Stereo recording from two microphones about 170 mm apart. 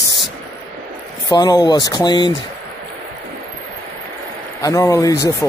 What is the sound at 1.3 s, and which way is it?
Speech, 20° left (ahead or behind).